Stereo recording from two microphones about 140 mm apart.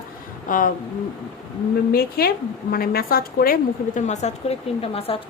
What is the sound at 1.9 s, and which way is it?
A woman's voice, 90° left.